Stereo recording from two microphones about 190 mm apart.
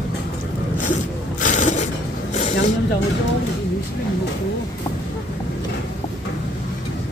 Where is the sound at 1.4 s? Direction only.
40° left (ahead or behind).